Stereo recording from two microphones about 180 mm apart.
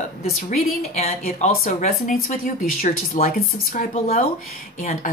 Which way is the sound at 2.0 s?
50° left (ahead or behind).